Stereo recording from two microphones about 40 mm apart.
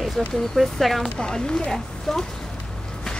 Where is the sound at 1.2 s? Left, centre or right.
Left.